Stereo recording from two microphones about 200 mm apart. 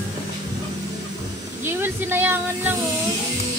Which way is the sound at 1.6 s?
10° right (ahead or behind).